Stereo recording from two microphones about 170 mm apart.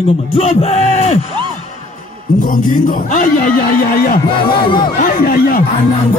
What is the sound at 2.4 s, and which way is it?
A man's voice, 55° left (ahead or behind).